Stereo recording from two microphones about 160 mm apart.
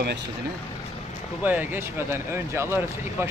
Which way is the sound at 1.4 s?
10° right (ahead or behind).